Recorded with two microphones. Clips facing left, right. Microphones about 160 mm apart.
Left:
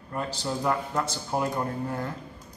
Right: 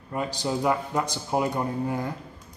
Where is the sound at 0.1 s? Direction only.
15° right (ahead or behind).